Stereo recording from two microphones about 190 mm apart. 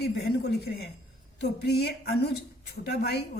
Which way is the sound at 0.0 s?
55° left (ahead or behind).